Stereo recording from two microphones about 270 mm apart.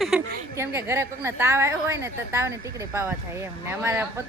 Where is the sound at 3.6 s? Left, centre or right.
Centre.